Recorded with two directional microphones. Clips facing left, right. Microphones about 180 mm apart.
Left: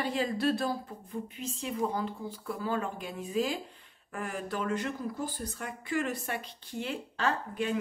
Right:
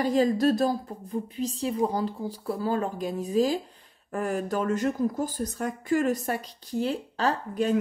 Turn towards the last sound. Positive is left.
turn(degrees=-40)  # may be behind; listen again after turning